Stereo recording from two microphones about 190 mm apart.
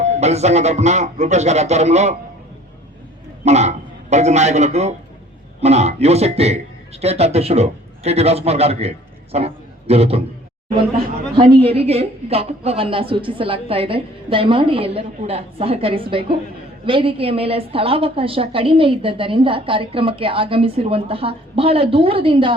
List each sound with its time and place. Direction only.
0.0 s speech: 35° right (ahead or behind)
3.4 s a man's voice: 35° right (ahead or behind)
11.3 s a woman's voice: 30° right (ahead or behind)